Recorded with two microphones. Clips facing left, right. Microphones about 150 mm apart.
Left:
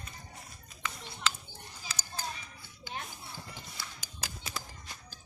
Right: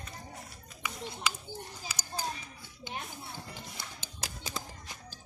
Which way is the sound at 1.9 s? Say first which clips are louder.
Even; 10° right (ahead or behind).